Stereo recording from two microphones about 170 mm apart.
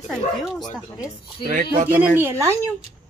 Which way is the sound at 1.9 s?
15° right (ahead or behind).